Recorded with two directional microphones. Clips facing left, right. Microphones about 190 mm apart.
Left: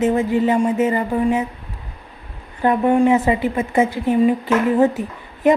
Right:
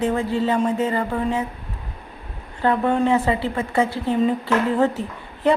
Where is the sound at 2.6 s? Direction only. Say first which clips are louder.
Left 4 dB; 15° left (ahead or behind).